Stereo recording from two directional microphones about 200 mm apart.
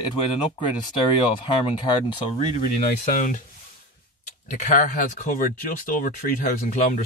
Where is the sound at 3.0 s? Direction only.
40° left (ahead or behind).